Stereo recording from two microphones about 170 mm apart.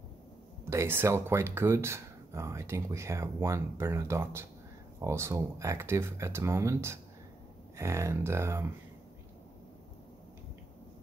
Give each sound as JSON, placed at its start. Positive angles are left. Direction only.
{"t": 0.7, "sound": "speech", "side_deg": -15}